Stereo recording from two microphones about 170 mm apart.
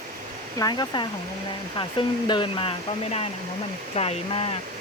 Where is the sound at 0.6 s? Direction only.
25° left (ahead or behind).